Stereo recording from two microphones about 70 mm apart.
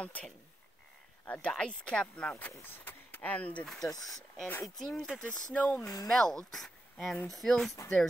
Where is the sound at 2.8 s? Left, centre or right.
Left.